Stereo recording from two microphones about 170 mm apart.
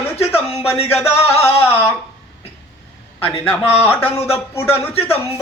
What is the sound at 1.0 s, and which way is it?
Music, 35° left (ahead or behind).